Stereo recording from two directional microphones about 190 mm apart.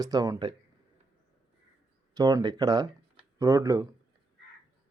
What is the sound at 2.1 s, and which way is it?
A man's voice, 20° right (ahead or behind).